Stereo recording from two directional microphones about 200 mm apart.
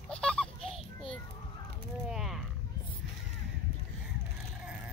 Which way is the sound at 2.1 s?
Centre (ahead or behind).